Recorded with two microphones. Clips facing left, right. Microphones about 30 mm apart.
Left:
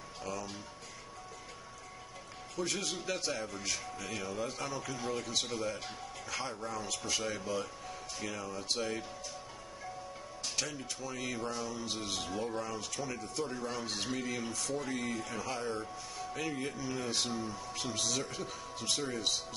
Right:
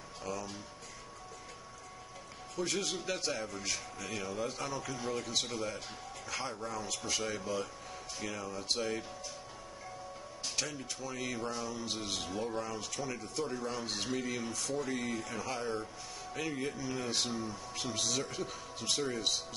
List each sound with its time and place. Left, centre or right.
0.2 s speech: centre
2.5 s a man's voice: centre
10.5 s a man's voice: centre